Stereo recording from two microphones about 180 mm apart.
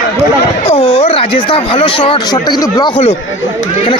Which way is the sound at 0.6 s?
30° left (ahead or behind).